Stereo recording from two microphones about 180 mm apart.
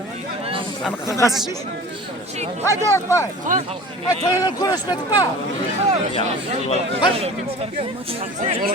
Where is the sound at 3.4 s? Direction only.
45° right (ahead or behind).